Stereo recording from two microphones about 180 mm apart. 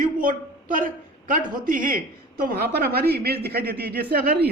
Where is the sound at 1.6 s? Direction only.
50° right (ahead or behind).